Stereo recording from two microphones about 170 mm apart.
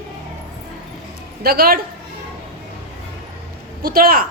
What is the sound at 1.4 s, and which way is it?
Speech, 65° right (ahead or behind).